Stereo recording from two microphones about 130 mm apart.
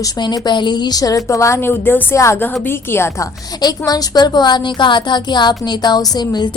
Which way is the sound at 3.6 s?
30° left (ahead or behind).